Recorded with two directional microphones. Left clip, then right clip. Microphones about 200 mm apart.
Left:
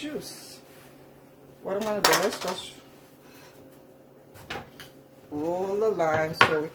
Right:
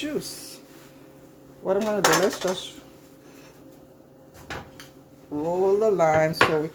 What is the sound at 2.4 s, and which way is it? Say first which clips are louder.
Speech: right 5 dB; 35° right (ahead or behind).